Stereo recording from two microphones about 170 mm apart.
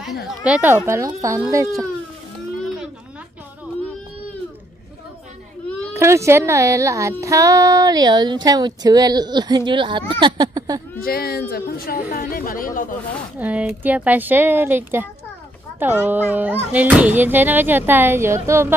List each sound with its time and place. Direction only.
0.4 s speech: 10° right (ahead or behind)
5.9 s speech: 15° right (ahead or behind)
11.0 s speech: 65° left (ahead or behind)
13.4 s speech: 10° right (ahead or behind)